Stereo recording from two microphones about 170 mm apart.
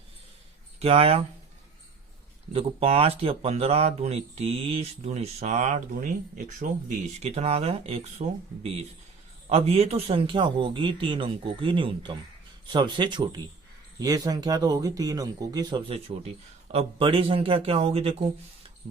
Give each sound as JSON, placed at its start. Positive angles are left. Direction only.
{"t": 0.8, "sound": "speech", "side_deg": -35}
{"t": 2.5, "sound": "speech", "side_deg": -35}
{"t": 15.9, "sound": "speech", "side_deg": -35}